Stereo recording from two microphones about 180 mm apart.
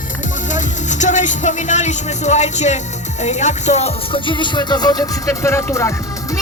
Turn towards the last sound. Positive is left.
turn(degrees=15)  # may be behind; listen again after turning